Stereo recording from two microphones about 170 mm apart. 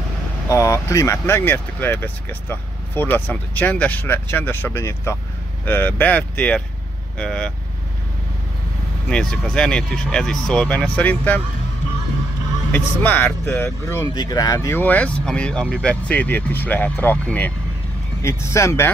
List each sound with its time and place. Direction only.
0.5 s speech: 15° left (ahead or behind)
9.1 s speech: 5° left (ahead or behind)
12.7 s speech: 10° left (ahead or behind)